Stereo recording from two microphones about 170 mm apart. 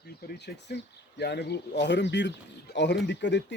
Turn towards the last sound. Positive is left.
turn(degrees=90)